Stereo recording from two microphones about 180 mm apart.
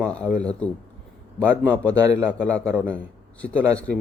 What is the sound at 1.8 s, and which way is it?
Speech, 5° left (ahead or behind).